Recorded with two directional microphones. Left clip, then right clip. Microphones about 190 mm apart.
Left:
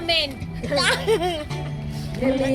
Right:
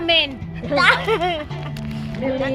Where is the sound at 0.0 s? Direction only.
30° left (ahead or behind).